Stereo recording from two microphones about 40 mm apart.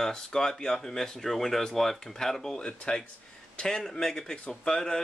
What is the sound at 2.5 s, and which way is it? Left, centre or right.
Speech, left.